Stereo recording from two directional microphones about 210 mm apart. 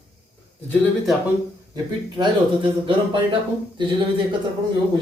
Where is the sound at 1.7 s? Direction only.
20° right (ahead or behind).